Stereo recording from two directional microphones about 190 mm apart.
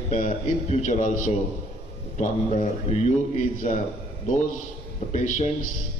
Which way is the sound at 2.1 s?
40° left (ahead or behind).